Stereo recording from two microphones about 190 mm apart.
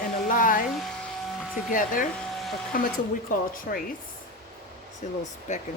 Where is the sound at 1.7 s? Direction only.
45° left (ahead or behind).